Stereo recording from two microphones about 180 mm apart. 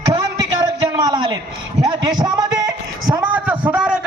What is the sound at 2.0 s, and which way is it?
Speech, 20° right (ahead or behind).